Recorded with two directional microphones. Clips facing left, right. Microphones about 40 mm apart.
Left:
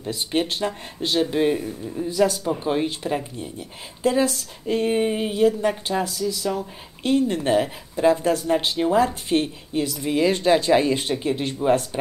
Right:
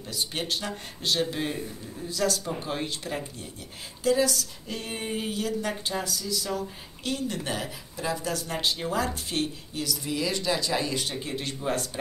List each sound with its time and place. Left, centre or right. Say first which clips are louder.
0.0 s speech: left 8 dB; left